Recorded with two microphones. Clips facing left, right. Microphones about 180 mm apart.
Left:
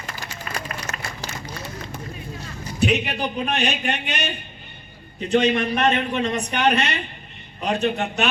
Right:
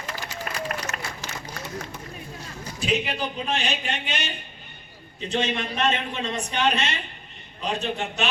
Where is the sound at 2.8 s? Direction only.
65° left (ahead or behind).